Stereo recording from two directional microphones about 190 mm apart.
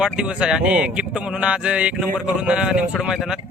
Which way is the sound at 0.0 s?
5° right (ahead or behind).